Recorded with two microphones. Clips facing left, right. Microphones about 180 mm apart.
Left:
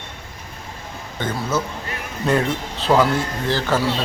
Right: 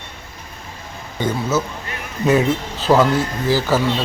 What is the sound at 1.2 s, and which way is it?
Speech, 5° right (ahead or behind).